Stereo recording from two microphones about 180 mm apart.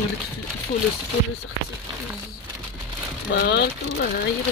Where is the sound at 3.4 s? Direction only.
65° left (ahead or behind).